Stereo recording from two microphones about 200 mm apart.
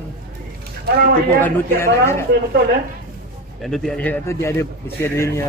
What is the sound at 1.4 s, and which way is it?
Speech, 10° left (ahead or behind).